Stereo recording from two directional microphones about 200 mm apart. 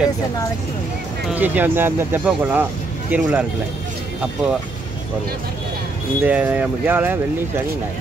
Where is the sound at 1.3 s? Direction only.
10° right (ahead or behind).